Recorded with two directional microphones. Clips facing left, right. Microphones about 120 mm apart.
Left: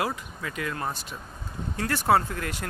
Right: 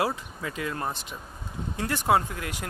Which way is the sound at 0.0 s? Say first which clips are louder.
Right 2 dB; 25° right (ahead or behind).